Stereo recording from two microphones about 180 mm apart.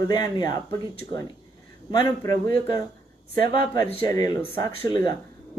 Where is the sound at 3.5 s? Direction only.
25° left (ahead or behind).